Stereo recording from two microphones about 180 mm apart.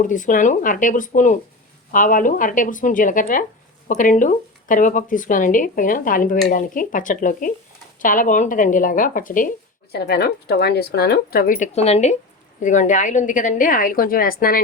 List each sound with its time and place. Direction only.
0.0 s speech: 45° left (ahead or behind)